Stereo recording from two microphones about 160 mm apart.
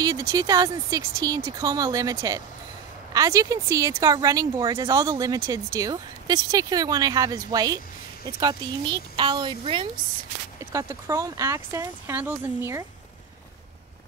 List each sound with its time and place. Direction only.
0.0 s speech: 20° right (ahead or behind)
10.6 s speech: 20° right (ahead or behind)